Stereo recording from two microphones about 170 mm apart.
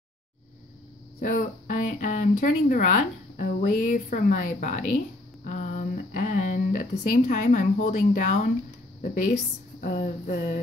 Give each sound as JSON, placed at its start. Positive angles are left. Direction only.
{"t": 1.2, "sound": "speech", "side_deg": 50}
{"t": 5.4, "sound": "a sound", "side_deg": 45}
{"t": 9.8, "sound": "speech", "side_deg": 50}